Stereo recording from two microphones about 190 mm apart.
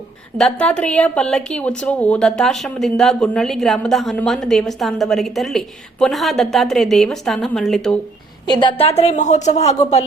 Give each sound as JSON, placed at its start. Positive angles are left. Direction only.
{"t": 0.3, "sound": "speech", "side_deg": 5}
{"t": 8.4, "sound": "a woman's voice", "side_deg": 25}